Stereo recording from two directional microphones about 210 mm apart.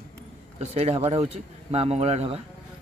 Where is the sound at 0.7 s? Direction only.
30° right (ahead or behind).